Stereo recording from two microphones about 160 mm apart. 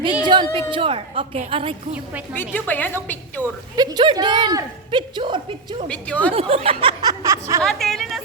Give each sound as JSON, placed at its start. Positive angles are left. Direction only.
{"t": 0.3, "sound": "a sound", "side_deg": -30}
{"t": 0.7, "sound": "a woman's voice", "side_deg": -35}
{"t": 2.3, "sound": "a woman's voice", "side_deg": 10}
{"t": 3.4, "sound": "speech", "side_deg": -25}
{"t": 5.9, "sound": "a woman's voice", "side_deg": 10}
{"t": 6.3, "sound": "a woman's voice", "side_deg": -40}
{"t": 7.0, "sound": "speech", "side_deg": -25}
{"t": 7.6, "sound": "speech", "side_deg": 0}